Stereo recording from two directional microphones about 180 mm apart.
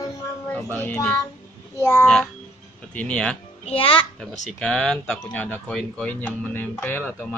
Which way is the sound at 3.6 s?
30° left (ahead or behind).